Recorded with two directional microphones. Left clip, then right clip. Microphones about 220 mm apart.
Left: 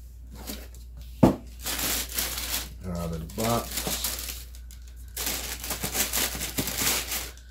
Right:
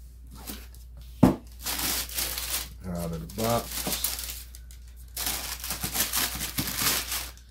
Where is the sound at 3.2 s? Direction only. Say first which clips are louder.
Even; centre (ahead or behind).